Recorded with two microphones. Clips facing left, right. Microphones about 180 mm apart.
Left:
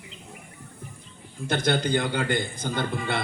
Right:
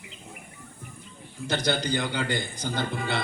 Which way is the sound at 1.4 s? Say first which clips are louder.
Left 2 dB; 55° left (ahead or behind).